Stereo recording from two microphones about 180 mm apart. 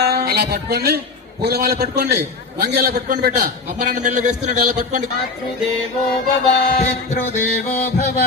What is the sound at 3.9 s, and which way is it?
Speech, 45° right (ahead or behind).